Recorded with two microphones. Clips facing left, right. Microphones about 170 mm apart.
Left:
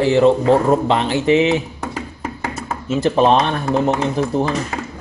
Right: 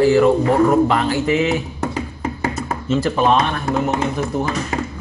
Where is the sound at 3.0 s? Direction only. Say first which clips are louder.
Left 4 dB; 25° left (ahead or behind).